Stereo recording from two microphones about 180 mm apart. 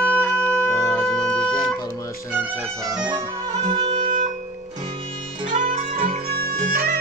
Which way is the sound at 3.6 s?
40° right (ahead or behind).